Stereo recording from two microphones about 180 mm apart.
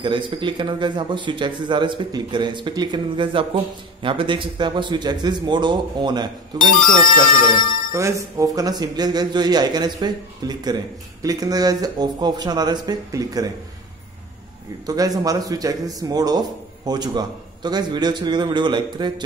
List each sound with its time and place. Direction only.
0.0 s speech: 25° right (ahead or behind)
6.8 s speech: 50° left (ahead or behind)
7.9 s speech: 15° right (ahead or behind)
14.9 s speech: 20° right (ahead or behind)